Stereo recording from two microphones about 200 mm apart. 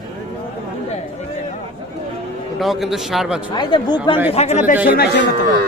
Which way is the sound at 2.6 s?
Centre (ahead or behind).